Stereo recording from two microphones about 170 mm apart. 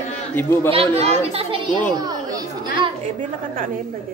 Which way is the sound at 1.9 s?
25° right (ahead or behind).